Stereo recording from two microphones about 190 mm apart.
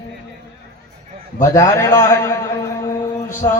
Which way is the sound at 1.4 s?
15° left (ahead or behind).